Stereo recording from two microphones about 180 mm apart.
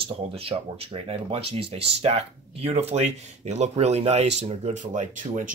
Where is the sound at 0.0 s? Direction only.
30° right (ahead or behind).